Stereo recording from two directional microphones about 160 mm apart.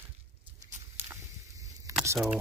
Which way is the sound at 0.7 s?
15° right (ahead or behind).